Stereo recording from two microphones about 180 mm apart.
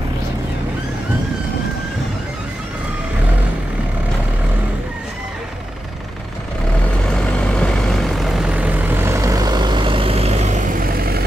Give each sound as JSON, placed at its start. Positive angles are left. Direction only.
{"t": 7.2, "sound": "vehicle", "side_deg": 5}
{"t": 10.8, "sound": "vehicle", "side_deg": -55}